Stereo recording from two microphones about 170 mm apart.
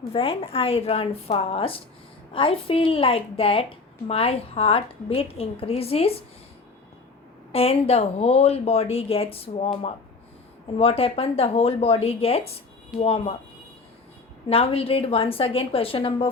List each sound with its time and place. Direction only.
0.1 s a woman's voice: 35° left (ahead or behind)
7.5 s a woman's voice: 35° left (ahead or behind)
10.8 s a woman's voice: 35° left (ahead or behind)
14.5 s a woman's voice: 35° left (ahead or behind)